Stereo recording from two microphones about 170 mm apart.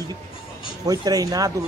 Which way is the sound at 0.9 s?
20° right (ahead or behind).